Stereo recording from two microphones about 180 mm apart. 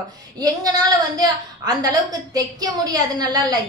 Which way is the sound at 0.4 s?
20° right (ahead or behind).